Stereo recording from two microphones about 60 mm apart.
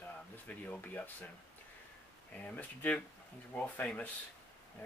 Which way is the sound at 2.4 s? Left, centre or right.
Left.